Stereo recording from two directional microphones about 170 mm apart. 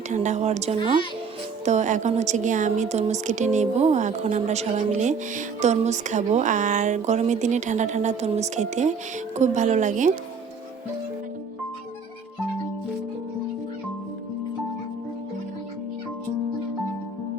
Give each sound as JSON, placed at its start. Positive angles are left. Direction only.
{"t": 0.1, "sound": "a woman's voice", "side_deg": -45}